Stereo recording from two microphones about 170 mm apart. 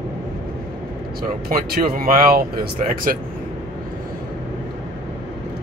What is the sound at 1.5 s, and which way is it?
Speech, 60° right (ahead or behind).